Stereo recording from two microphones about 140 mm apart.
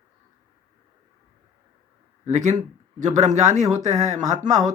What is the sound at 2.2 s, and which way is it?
Speech, 55° right (ahead or behind).